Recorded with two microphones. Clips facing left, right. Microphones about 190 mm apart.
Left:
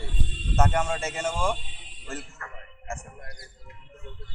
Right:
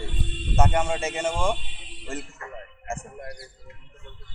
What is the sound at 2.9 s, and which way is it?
Speech, 30° right (ahead or behind).